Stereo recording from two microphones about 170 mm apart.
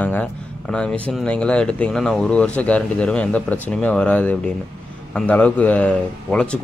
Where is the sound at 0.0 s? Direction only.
10° left (ahead or behind).